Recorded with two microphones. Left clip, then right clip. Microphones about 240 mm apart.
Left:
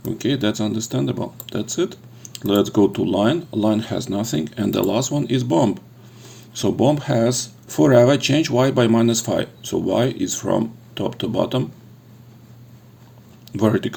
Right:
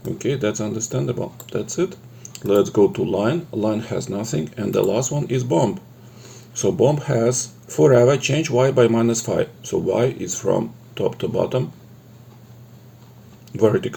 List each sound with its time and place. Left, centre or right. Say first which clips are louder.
0.3 s speech: left 1 dB; left
13.7 s speech: right 1 dB; left